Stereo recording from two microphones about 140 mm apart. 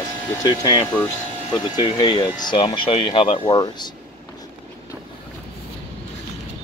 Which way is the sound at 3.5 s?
30° left (ahead or behind).